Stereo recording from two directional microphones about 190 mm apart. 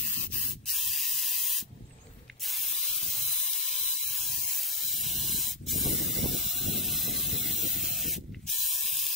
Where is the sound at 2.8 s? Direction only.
Centre (ahead or behind).